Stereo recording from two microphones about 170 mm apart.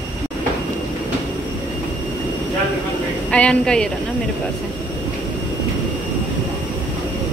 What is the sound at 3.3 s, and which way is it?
Speech, 5° left (ahead or behind).